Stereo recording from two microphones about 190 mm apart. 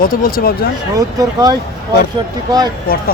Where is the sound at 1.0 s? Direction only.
20° right (ahead or behind).